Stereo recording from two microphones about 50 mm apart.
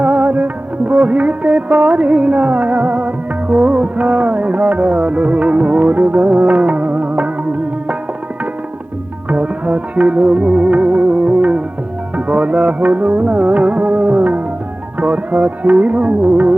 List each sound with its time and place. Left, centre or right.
0.3 s music: right
9.3 s music: right